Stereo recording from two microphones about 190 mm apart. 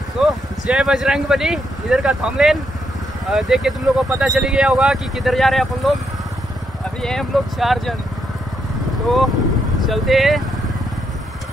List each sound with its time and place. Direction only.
0.2 s speech: 5° right (ahead or behind)
7.0 s speech: centre (ahead or behind)
9.0 s speech: centre (ahead or behind)